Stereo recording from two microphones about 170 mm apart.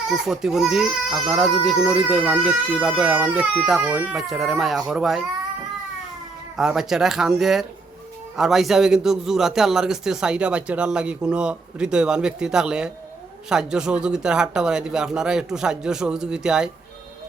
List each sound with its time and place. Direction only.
0.1 s speech: centre (ahead or behind)
6.6 s speech: 5° right (ahead or behind)